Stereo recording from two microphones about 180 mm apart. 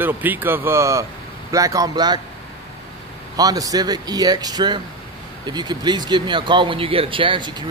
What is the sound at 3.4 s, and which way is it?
Speech, 20° right (ahead or behind).